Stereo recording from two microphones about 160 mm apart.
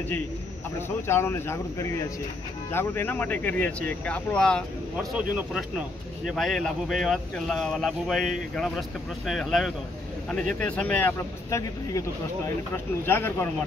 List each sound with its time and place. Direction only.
0.7 s speech: 15° left (ahead or behind)